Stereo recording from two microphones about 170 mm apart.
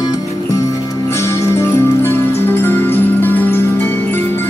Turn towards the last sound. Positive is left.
turn(degrees=10)  # may be behind; listen again after turning